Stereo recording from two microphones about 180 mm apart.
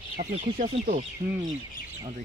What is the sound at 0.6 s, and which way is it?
Speech, 35° right (ahead or behind).